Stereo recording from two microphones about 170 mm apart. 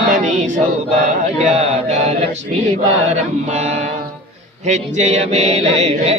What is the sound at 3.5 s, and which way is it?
Music, 40° right (ahead or behind).